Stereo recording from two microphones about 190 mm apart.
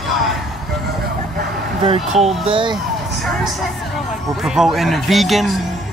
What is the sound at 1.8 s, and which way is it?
Speech, 35° right (ahead or behind).